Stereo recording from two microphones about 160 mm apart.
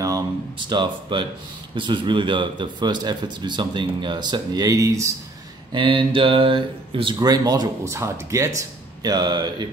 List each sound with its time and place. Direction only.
0.7 s speech: 30° right (ahead or behind)
5.7 s speech: 30° right (ahead or behind)